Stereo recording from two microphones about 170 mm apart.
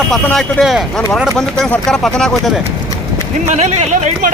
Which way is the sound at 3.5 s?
40° right (ahead or behind).